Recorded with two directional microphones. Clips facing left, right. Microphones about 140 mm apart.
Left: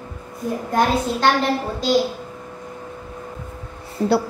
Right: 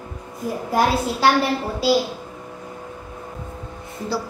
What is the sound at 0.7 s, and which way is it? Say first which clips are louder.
Child singing: even; 5° right (ahead or behind).